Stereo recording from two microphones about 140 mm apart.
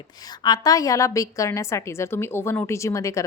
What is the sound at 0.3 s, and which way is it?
Speech, 30° left (ahead or behind).